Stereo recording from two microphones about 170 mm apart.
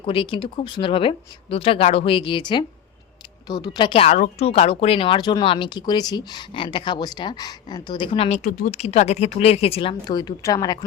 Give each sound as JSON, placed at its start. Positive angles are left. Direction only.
{"t": 0.0, "sound": "speech", "side_deg": 30}
{"t": 10.1, "sound": "speech", "side_deg": 20}